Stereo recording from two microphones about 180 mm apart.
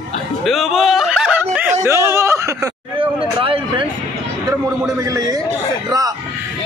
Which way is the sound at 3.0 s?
30° right (ahead or behind).